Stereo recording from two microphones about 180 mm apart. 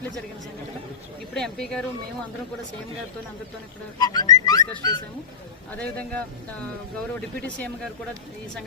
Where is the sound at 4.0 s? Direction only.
20° left (ahead or behind).